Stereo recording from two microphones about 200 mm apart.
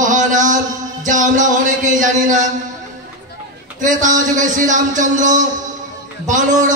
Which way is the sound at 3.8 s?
40° right (ahead or behind).